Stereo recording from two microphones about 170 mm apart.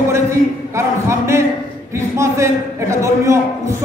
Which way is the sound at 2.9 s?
15° right (ahead or behind).